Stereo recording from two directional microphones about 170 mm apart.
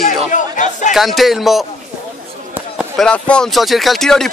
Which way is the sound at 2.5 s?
5° right (ahead or behind).